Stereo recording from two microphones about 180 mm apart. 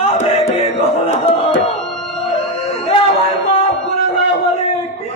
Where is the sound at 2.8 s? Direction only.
30° left (ahead or behind).